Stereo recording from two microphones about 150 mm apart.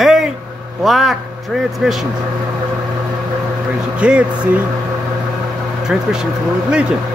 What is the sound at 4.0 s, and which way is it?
Speech, 5° right (ahead or behind).